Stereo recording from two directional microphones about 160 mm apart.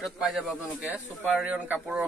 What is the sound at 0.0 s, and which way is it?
Speech, centre (ahead or behind).